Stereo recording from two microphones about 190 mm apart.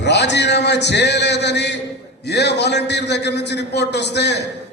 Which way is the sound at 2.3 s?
65° left (ahead or behind).